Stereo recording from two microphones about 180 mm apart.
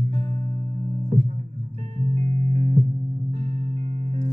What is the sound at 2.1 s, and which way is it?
Music, 35° right (ahead or behind).